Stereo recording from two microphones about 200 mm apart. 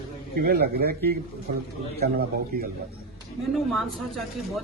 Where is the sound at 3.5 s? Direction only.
Centre (ahead or behind).